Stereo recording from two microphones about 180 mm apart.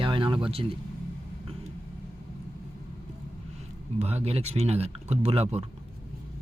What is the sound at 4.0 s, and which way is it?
Speech, 35° right (ahead or behind).